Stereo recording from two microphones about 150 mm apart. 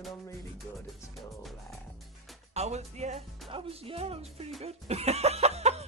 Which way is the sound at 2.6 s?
45° right (ahead or behind).